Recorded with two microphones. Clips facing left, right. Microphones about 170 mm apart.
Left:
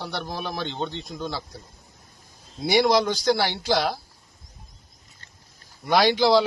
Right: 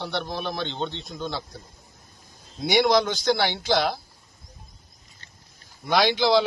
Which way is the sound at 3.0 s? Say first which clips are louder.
Left 3 dB; 35° left (ahead or behind).